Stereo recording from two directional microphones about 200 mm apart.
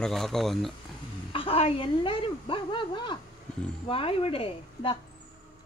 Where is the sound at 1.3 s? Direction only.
25° left (ahead or behind).